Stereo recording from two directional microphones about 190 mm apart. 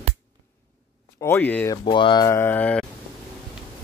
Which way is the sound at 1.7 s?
25° left (ahead or behind).